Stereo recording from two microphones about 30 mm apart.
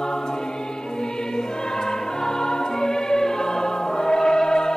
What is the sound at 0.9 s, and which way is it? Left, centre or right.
Music, left.